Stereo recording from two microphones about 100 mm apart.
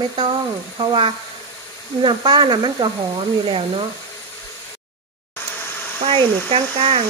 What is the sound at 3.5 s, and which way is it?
Speech, 65° right (ahead or behind).